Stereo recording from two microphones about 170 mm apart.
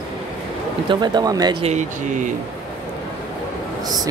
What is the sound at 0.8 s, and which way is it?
Speech, 25° right (ahead or behind).